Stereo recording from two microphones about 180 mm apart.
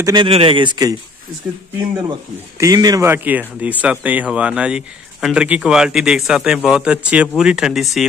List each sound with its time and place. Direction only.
0.0 s a man's voice: 25° right (ahead or behind)
2.6 s speech: 20° right (ahead or behind); by 8.0 s centre (ahead or behind)